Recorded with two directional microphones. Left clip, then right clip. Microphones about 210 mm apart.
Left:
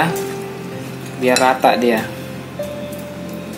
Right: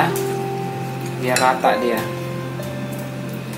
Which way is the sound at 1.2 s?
45° left (ahead or behind).